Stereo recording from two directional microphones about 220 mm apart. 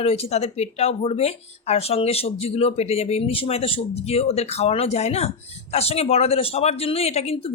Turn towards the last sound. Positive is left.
turn(degrees=25)  # may be behind; listen again after turning